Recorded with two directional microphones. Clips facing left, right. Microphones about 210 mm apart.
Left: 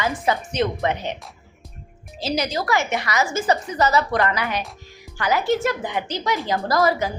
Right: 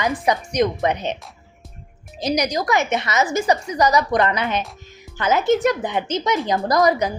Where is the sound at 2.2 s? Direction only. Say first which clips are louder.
Right 3 dB; 15° right (ahead or behind).